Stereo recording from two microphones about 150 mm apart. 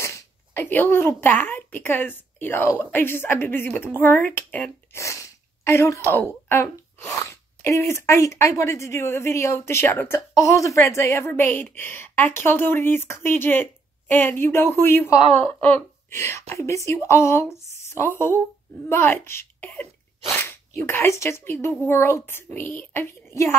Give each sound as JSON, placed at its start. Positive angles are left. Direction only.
{"t": 0.0, "sound": "a woman's voice", "side_deg": 15}
{"t": 15.2, "sound": "a woman's voice", "side_deg": -40}
{"t": 15.6, "sound": "a woman's voice", "side_deg": 15}